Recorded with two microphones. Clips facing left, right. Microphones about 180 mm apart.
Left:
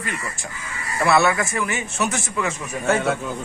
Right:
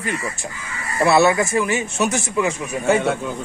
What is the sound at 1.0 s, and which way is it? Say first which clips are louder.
A man's voice: right 3 dB; 25° right (ahead or behind).